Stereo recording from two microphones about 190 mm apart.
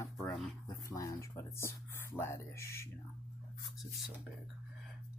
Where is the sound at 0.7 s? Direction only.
15° left (ahead or behind).